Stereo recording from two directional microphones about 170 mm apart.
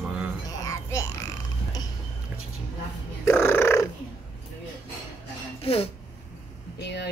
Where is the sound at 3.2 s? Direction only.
15° left (ahead or behind).